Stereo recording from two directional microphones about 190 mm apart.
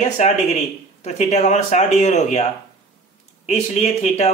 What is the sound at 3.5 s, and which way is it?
Speech, 35° left (ahead or behind).